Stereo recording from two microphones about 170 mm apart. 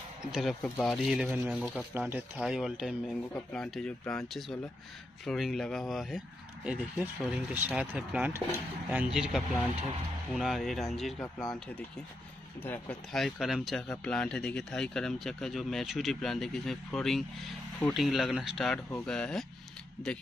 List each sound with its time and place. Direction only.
0.3 s speech: centre (ahead or behind)
12.6 s speech: 10° left (ahead or behind)